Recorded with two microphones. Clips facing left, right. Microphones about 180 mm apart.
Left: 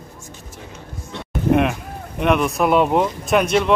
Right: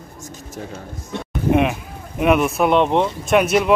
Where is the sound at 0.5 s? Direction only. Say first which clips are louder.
Right 6 dB; 50° right (ahead or behind).